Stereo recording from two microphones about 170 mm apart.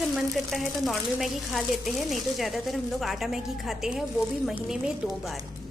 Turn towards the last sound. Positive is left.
turn(degrees=0)  # may be behind; listen again after turning